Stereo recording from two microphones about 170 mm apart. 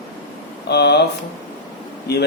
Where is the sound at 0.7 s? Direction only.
75° left (ahead or behind).